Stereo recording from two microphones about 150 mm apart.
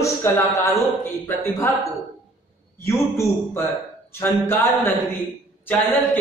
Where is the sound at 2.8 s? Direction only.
15° left (ahead or behind).